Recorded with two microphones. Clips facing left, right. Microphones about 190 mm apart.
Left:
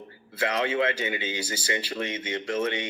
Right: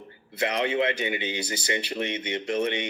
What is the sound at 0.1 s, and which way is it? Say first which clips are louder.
Speech: even; 20° right (ahead or behind).